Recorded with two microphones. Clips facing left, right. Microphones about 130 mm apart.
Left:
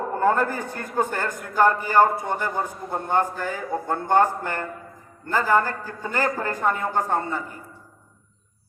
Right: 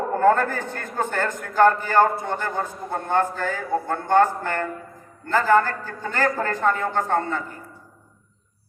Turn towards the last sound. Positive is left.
turn(degrees=10)  # may be behind; listen again after turning